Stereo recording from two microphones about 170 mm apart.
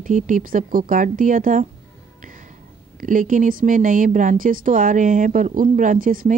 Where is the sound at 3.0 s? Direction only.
50° right (ahead or behind).